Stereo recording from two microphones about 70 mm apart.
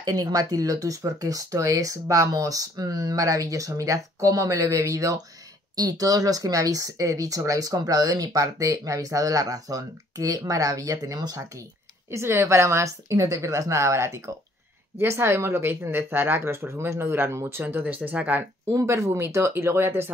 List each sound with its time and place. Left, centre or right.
0.0 s speech: right
5.8 s speech: right
12.1 s speech: right
18.7 s speech: right